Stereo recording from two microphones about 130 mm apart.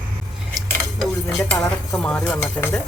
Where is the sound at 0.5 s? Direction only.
Centre (ahead or behind).